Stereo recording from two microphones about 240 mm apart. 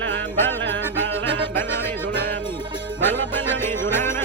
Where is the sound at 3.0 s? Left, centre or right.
Centre.